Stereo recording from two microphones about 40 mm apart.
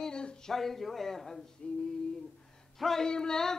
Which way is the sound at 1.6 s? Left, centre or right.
Left.